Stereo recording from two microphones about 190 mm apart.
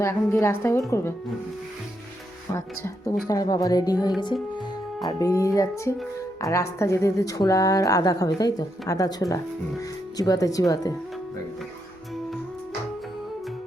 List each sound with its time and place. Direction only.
0.0 s speech: 15° left (ahead or behind)
2.5 s a woman's voice: 15° left (ahead or behind)
4.2 s music: 25° left (ahead or behind)
5.0 s a woman's voice: 20° left (ahead or behind)